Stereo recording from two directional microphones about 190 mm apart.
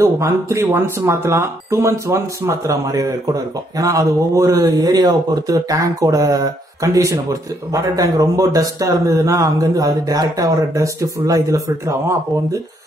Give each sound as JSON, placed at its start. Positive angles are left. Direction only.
{"t": 0.0, "sound": "speech", "side_deg": -15}